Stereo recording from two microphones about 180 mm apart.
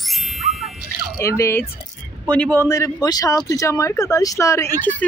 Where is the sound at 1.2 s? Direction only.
15° left (ahead or behind).